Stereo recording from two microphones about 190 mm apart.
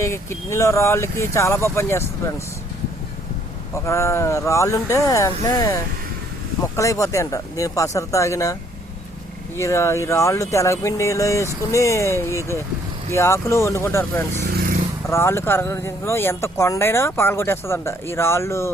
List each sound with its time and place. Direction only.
0.0 s speech: 15° left (ahead or behind)
3.8 s speech: 15° left (ahead or behind)
9.6 s speech: 15° left (ahead or behind)